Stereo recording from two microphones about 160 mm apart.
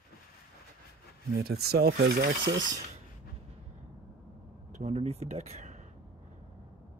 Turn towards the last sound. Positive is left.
turn(degrees=-45)  # may be behind; listen again after turning